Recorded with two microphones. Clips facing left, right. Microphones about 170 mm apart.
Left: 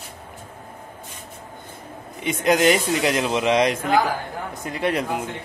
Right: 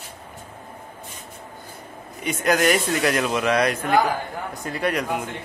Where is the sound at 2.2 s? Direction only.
25° left (ahead or behind).